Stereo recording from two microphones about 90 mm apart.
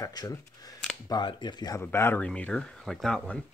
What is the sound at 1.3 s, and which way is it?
Speech, 55° left (ahead or behind).